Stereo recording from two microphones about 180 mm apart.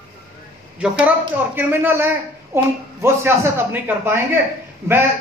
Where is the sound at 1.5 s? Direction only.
10° right (ahead or behind).